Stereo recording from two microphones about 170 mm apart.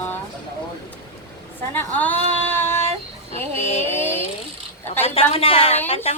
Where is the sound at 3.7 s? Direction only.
40° left (ahead or behind).